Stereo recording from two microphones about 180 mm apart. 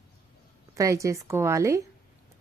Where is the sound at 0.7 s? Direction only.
15° right (ahead or behind).